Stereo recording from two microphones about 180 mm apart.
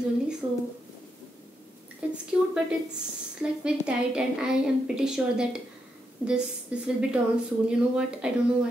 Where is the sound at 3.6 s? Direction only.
5° right (ahead or behind).